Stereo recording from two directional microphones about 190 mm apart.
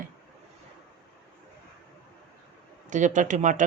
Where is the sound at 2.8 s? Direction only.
40° right (ahead or behind).